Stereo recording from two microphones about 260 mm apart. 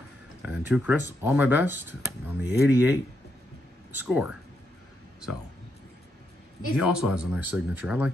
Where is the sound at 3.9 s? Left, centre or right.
Centre.